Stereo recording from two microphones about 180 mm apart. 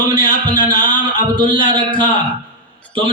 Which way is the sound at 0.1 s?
25° right (ahead or behind).